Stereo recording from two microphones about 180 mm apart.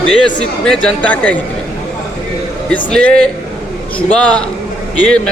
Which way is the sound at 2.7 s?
5° left (ahead or behind).